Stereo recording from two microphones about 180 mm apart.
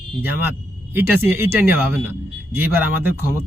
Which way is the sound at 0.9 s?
10° right (ahead or behind).